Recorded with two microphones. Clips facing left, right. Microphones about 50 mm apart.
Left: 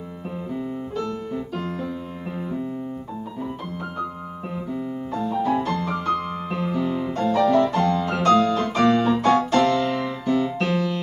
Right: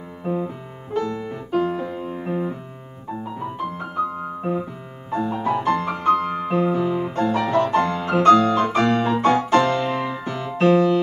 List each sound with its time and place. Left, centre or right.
1.5 s music: right
5.1 s music: right